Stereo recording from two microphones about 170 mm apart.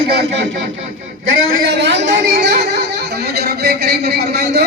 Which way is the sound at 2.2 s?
65° right (ahead or behind).